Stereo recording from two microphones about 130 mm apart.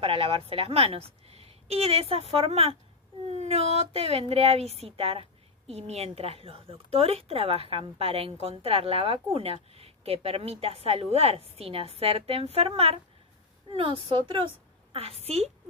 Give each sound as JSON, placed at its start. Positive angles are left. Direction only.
{"t": 0.0, "sound": "a woman's voice", "side_deg": -45}